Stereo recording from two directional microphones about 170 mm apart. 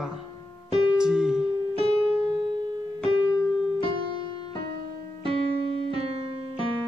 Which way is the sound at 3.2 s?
25° left (ahead or behind).